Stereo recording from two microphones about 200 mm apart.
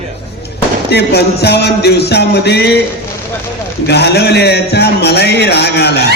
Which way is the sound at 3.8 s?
55° left (ahead or behind).